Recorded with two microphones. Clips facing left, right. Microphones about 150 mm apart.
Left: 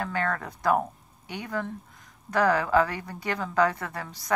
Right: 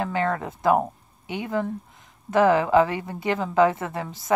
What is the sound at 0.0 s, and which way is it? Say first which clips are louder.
A woman's voice: right 4 dB; 20° right (ahead or behind).